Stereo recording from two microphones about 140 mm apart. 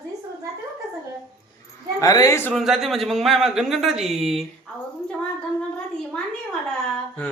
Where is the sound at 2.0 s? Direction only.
25° left (ahead or behind).